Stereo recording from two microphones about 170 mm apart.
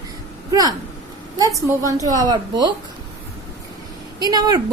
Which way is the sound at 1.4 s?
20° right (ahead or behind).